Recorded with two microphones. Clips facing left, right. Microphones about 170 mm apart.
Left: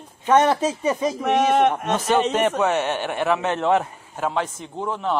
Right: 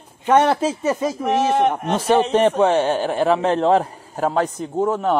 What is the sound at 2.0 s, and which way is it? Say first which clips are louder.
A man's voice: right 5 dB; 30° right (ahead or behind).